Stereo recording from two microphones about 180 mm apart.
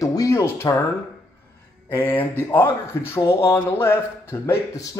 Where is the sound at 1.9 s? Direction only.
10° left (ahead or behind).